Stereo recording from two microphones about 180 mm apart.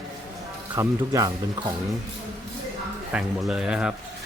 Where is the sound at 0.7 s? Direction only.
15° right (ahead or behind).